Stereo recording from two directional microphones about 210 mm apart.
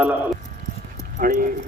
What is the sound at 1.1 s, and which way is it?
Speech, 40° right (ahead or behind).